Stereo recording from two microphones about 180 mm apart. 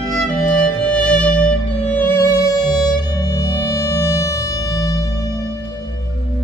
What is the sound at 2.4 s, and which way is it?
Music, 20° left (ahead or behind).